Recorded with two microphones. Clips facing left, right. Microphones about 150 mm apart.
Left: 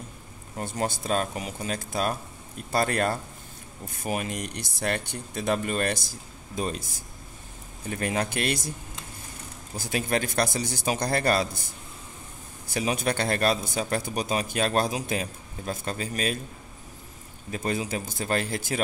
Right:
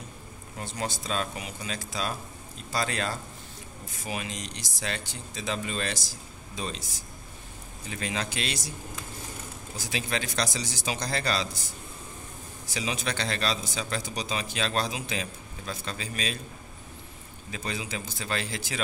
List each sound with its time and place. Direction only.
0.6 s speech: 50° left (ahead or behind)
9.8 s speech: 50° left (ahead or behind)
12.7 s speech: 50° left (ahead or behind)
17.5 s speech: 45° left (ahead or behind)